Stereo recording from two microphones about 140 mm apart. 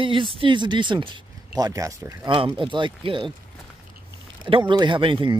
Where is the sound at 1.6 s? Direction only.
25° right (ahead or behind).